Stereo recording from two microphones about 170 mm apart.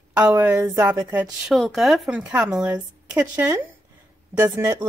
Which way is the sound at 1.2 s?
Centre (ahead or behind).